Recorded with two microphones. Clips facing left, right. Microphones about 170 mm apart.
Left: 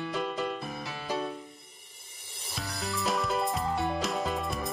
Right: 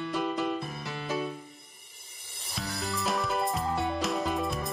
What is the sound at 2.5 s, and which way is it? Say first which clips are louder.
Music: right 1 dB; centre (ahead or behind).